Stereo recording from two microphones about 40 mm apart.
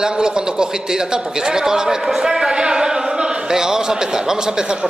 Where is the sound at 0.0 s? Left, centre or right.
Centre.